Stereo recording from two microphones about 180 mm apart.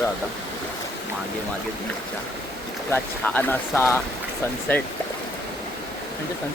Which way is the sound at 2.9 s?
10° left (ahead or behind).